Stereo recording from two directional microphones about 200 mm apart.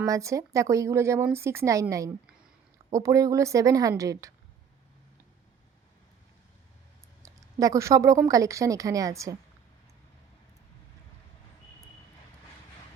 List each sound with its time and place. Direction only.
0.0 s a woman's voice: 15° right (ahead or behind)
7.2 s a woman's voice: 15° right (ahead or behind)